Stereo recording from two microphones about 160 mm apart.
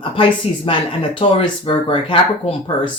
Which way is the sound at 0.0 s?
35° left (ahead or behind).